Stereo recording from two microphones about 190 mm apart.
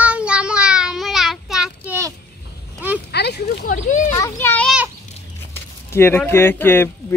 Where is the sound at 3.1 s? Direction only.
60° left (ahead or behind).